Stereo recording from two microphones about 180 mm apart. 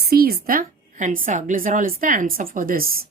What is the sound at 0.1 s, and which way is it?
A woman's voice, 60° right (ahead or behind).